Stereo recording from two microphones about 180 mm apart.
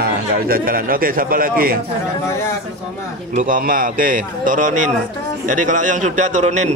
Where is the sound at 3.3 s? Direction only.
50° right (ahead or behind).